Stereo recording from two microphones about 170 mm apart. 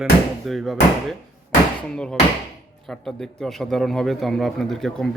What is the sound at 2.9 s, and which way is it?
Speech, centre (ahead or behind).